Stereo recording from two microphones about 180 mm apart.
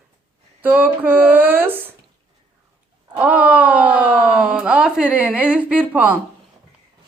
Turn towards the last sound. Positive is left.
turn(degrees=-10)  # may be behind; listen again after turning